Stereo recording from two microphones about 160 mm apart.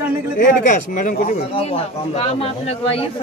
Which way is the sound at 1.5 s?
35° left (ahead or behind).